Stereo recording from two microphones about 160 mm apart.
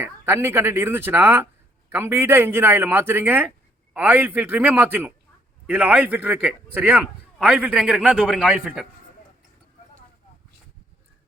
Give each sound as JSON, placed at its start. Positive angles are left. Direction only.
{"t": 0.0, "sound": "a man's voice", "side_deg": -15}